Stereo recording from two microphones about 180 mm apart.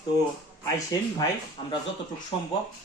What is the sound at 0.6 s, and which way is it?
Speech, 20° left (ahead or behind).